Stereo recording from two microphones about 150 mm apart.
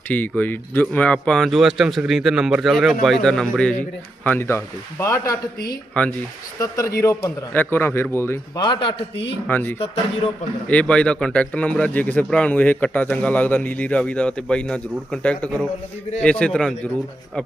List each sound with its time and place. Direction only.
0.1 s speech: 10° left (ahead or behind)
6.6 s a man's voice: 20° left (ahead or behind)
8.6 s a man's voice: 30° left (ahead or behind)
9.5 s speech: 15° left (ahead or behind)